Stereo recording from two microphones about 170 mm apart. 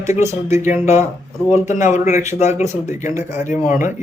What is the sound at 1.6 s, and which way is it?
Speech, 45° left (ahead or behind).